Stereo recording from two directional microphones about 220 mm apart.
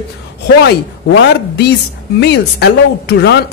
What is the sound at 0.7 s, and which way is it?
A woman's voice, 50° left (ahead or behind).